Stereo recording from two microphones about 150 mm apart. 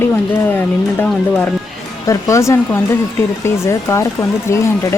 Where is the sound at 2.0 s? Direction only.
20° left (ahead or behind).